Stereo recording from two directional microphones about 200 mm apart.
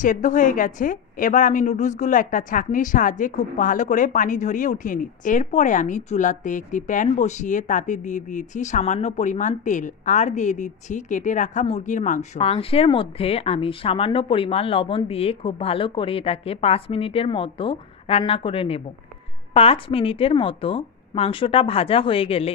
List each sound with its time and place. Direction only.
0.0 s a woman's voice: 40° left (ahead or behind)